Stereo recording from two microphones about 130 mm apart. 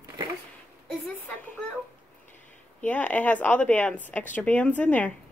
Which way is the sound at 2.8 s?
10° left (ahead or behind).